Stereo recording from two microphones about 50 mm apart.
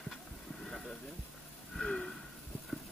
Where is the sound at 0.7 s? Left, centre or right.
Centre.